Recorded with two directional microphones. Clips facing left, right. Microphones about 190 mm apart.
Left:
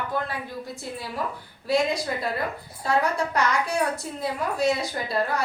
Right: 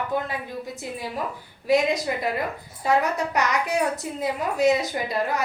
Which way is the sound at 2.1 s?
15° right (ahead or behind).